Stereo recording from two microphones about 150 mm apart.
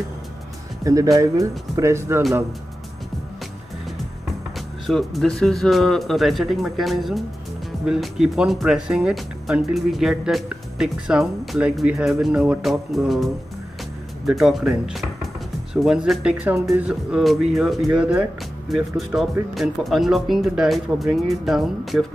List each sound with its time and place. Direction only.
0.8 s speech: 20° right (ahead or behind)
4.6 s speech: centre (ahead or behind)